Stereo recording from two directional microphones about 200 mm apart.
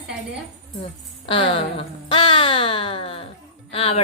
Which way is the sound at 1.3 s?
30° left (ahead or behind).